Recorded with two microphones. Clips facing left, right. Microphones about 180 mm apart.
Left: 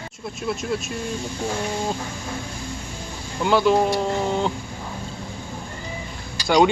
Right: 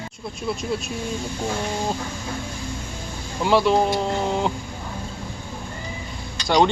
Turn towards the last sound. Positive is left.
turn(degrees=5)  # may be behind; listen again after turning